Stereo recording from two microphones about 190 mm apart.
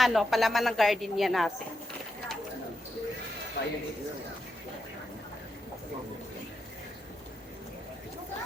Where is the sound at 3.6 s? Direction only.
65° left (ahead or behind).